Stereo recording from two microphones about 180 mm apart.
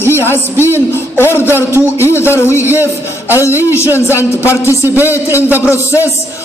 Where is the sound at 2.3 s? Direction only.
15° left (ahead or behind).